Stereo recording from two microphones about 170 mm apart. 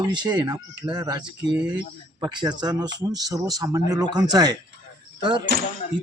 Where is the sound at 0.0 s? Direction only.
25° right (ahead or behind).